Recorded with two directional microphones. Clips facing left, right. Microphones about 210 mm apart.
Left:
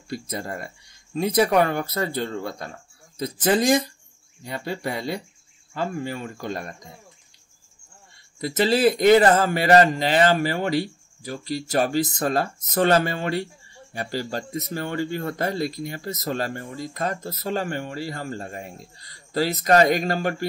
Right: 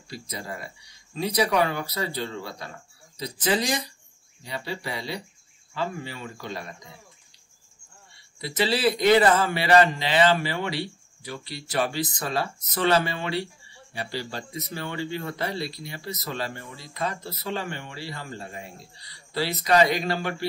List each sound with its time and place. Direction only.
0.1 s speech: 50° left (ahead or behind)
8.4 s speech: 45° left (ahead or behind)